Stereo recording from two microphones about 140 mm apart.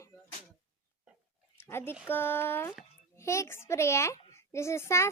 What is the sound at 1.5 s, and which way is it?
Speech, 15° left (ahead or behind).